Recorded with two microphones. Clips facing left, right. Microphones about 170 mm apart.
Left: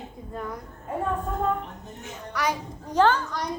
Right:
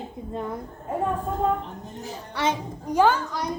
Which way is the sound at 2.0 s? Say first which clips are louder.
Right 2 dB; 30° right (ahead or behind).